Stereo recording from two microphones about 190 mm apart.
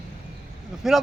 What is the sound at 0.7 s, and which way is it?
Speech, 5° right (ahead or behind).